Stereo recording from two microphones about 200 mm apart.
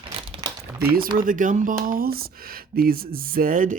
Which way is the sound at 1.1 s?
40° right (ahead or behind).